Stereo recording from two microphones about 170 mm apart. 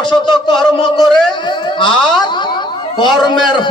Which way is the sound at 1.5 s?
25° left (ahead or behind).